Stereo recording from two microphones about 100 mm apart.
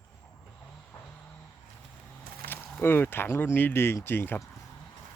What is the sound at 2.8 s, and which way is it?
Speech, 20° left (ahead or behind).